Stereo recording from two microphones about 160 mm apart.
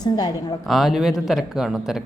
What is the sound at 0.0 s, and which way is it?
Speech, 25° left (ahead or behind).